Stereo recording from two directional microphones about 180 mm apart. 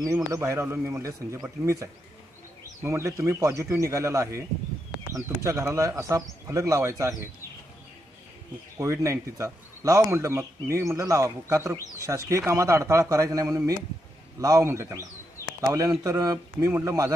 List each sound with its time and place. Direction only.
0.0 s a man's voice: 15° right (ahead or behind)
8.7 s a man's voice: 15° right (ahead or behind)